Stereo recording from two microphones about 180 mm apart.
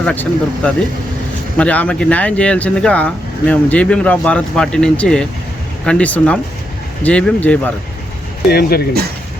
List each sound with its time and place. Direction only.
0.0 s speech: 5° left (ahead or behind)
8.4 s speech: 60° left (ahead or behind)